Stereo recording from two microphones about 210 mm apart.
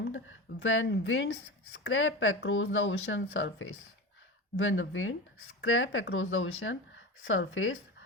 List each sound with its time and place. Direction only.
0.0 s speech: 65° left (ahead or behind)